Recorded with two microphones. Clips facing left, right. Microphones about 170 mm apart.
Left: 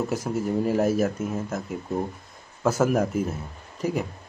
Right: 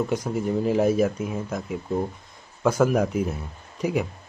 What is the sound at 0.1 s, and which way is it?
A man's voice, 5° left (ahead or behind).